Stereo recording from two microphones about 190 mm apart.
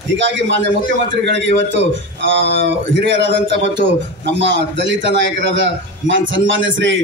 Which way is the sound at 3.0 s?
70° right (ahead or behind).